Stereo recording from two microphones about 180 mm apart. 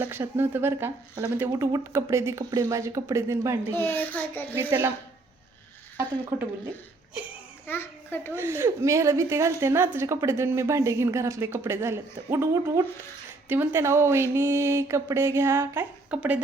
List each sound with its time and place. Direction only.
0.0 s a woman's voice: 10° right (ahead or behind)
3.8 s a child's voice: 10° left (ahead or behind)
6.3 s a woman's voice: 10° right (ahead or behind)
7.7 s a child's voice: 10° left (ahead or behind)
8.4 s a woman's voice: 15° right (ahead or behind)